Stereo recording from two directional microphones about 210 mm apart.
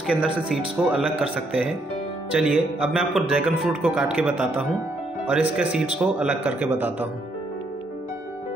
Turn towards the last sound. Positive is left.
turn(degrees=-10)  # may be behind; listen again after turning